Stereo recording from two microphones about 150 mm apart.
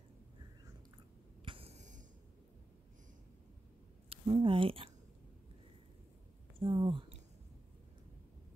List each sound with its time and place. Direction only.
1.4 s a sound: 40° right (ahead or behind); by 2.0 s 55° right (ahead or behind)
4.1 s speech: 35° right (ahead or behind)
6.6 s speech: 35° right (ahead or behind)